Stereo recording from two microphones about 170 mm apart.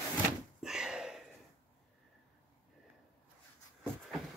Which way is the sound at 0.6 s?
5° right (ahead or behind).